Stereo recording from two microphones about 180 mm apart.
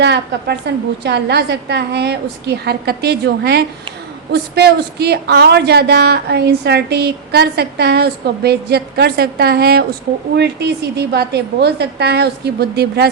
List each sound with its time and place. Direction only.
0.0 s a woman's voice: 70° right (ahead or behind)